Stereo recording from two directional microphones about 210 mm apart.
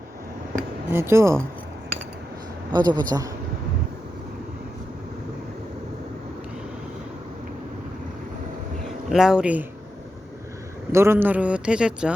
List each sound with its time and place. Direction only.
0.9 s speech: 10° right (ahead or behind)
2.7 s a man's voice: 20° right (ahead or behind)
9.0 s speech: centre (ahead or behind)
10.9 s speech: 10° right (ahead or behind)